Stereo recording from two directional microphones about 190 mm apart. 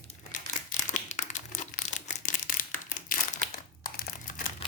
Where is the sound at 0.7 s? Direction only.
40° left (ahead or behind).